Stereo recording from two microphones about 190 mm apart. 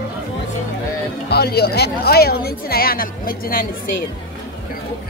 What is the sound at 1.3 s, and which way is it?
A woman's voice, 55° left (ahead or behind).